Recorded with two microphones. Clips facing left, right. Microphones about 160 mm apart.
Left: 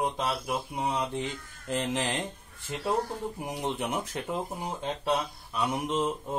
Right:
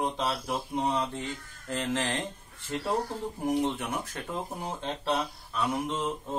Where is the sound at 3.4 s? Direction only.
15° left (ahead or behind).